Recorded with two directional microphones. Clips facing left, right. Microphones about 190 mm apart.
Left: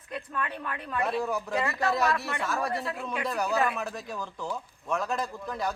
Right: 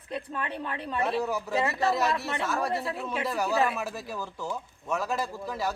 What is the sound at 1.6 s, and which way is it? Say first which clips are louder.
Speech: right 4 dB; 25° right (ahead or behind).